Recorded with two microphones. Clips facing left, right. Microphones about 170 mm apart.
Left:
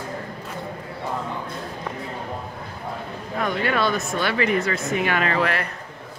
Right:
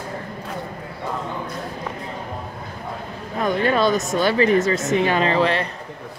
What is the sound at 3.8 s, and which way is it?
Speech, 40° right (ahead or behind).